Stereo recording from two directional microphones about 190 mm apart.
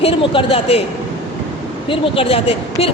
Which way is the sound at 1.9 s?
30° left (ahead or behind).